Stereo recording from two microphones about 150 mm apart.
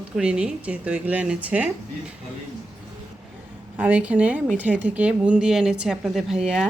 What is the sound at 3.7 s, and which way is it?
Speech, 10° right (ahead or behind).